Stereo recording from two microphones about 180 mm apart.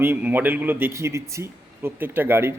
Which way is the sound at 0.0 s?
10° right (ahead or behind).